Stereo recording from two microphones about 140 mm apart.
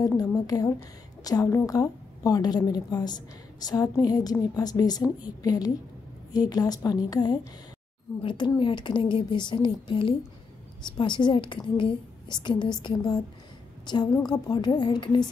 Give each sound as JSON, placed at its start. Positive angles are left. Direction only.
{"t": 1.2, "sound": "a woman's voice", "side_deg": 25}